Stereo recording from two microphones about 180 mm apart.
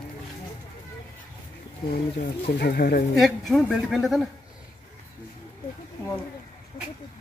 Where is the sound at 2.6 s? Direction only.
60° left (ahead or behind).